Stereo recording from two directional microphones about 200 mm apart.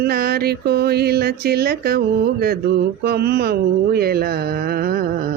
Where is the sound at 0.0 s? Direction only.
50° right (ahead or behind).